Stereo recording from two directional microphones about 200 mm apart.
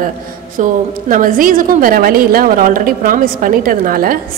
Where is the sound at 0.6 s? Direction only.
40° right (ahead or behind).